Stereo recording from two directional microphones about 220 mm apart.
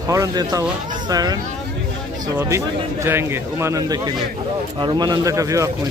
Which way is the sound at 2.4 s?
10° right (ahead or behind).